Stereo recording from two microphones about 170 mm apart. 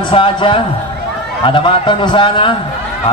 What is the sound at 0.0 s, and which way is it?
A man's voice, 30° left (ahead or behind).